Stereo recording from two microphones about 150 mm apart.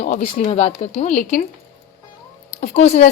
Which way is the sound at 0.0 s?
60° left (ahead or behind).